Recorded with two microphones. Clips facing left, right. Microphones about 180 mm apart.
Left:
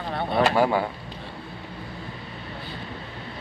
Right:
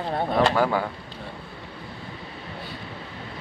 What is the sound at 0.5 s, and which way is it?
Speech, 15° left (ahead or behind).